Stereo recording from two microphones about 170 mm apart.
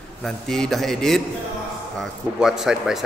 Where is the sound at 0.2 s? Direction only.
Centre (ahead or behind).